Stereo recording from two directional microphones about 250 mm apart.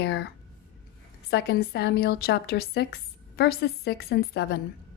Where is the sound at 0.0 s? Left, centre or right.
Left.